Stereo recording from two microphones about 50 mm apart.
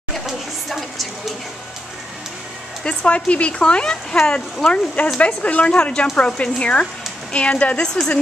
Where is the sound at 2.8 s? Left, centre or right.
Left.